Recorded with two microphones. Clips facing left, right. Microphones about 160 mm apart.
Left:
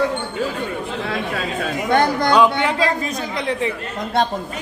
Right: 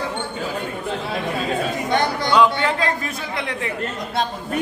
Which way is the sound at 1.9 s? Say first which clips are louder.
Left 6 dB; 50° left (ahead or behind).